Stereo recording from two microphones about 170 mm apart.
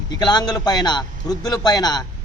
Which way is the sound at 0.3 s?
25° left (ahead or behind).